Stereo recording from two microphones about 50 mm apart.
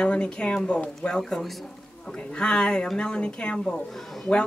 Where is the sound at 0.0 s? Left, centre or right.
Left.